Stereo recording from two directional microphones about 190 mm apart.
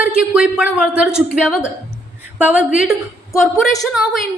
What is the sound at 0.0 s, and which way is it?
A woman's voice, 5° right (ahead or behind).